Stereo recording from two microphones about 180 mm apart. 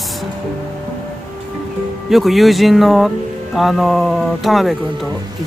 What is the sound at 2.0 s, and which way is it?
Speech, centre (ahead or behind).